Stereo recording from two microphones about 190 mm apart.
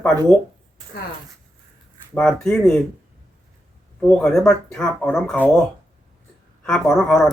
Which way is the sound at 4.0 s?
5° left (ahead or behind).